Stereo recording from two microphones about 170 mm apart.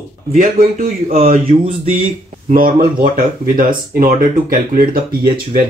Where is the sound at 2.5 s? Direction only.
60° right (ahead or behind).